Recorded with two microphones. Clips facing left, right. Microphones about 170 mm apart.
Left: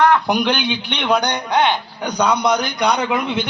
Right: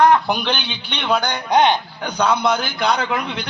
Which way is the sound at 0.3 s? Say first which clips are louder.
Left 4 dB; 15° left (ahead or behind).